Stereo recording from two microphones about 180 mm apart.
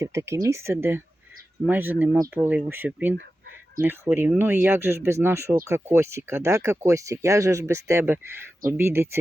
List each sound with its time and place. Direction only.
0.0 s speech: 15° right (ahead or behind)